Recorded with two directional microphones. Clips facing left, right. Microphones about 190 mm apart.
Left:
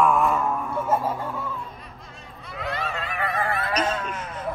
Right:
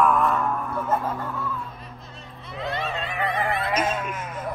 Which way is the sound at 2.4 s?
25° right (ahead or behind).